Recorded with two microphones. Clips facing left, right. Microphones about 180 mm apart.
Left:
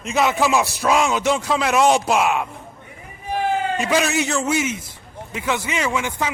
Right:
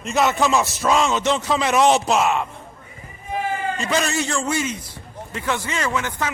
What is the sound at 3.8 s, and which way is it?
Speech, 10° left (ahead or behind).